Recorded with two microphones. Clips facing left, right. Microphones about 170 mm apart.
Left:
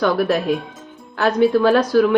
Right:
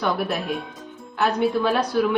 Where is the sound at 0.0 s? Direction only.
90° left.